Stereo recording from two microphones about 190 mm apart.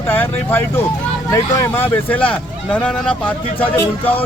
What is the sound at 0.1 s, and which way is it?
Speech, 10° left (ahead or behind).